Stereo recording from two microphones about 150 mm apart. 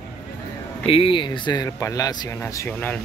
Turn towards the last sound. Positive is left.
turn(degrees=15)  # may be behind; listen again after turning